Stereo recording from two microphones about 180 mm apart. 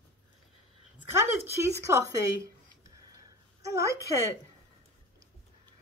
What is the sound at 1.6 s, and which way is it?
A woman's voice, 15° right (ahead or behind).